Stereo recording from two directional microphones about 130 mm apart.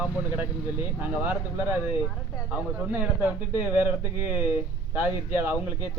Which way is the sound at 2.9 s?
15° right (ahead or behind).